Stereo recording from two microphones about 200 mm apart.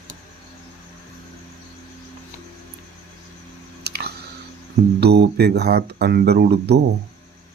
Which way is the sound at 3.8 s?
55° right (ahead or behind).